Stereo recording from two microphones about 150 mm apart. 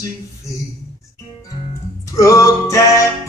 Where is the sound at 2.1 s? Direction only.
20° left (ahead or behind).